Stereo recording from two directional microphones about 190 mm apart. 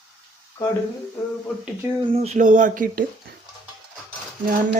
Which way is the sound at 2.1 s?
35° right (ahead or behind).